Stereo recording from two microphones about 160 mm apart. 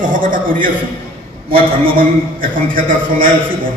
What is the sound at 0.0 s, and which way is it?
A man's voice, 55° right (ahead or behind).